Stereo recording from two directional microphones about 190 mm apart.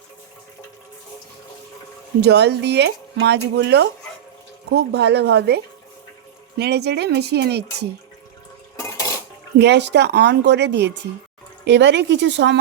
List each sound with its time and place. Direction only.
2.2 s speech: 60° right (ahead or behind)
6.6 s speech: 60° right (ahead or behind)
8.7 s dishes: 15° left (ahead or behind)
9.6 s speech: 65° right (ahead or behind)